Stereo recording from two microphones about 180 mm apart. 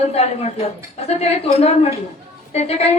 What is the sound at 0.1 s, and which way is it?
Speech, 35° left (ahead or behind).